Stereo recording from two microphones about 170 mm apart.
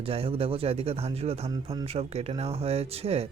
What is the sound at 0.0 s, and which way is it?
Speech, 35° right (ahead or behind).